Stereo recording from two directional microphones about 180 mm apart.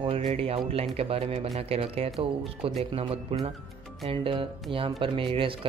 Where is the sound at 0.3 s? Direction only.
35° right (ahead or behind).